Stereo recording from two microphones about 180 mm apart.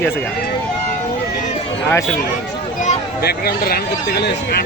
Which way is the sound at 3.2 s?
60° left (ahead or behind).